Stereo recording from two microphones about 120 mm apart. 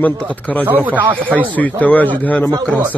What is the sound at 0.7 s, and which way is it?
Speech, 15° right (ahead or behind).